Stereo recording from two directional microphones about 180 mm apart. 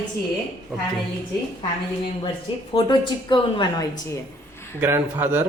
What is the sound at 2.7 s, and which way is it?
Speech, 25° left (ahead or behind).